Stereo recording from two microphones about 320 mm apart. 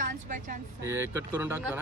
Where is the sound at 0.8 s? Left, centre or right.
Centre.